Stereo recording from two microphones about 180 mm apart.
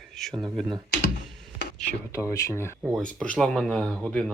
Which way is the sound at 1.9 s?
15° left (ahead or behind).